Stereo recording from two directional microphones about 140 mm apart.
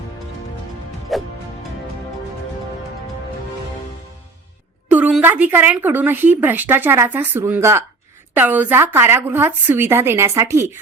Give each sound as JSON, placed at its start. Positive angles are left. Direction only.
{"t": 1.1, "sound": "music", "side_deg": 0}
{"t": 4.9, "sound": "a sound", "side_deg": -10}
{"t": 5.2, "sound": "a woman's voice", "side_deg": -15}